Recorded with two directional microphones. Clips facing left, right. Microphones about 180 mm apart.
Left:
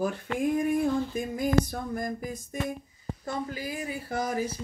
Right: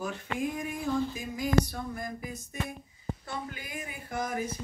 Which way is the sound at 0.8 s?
55° left (ahead or behind).